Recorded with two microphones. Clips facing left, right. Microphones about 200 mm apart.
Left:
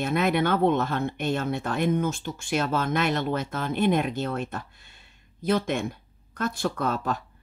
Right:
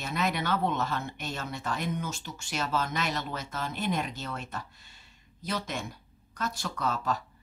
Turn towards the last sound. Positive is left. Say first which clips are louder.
# left 3 dB
turn(degrees=55)  # may be behind; listen again after turning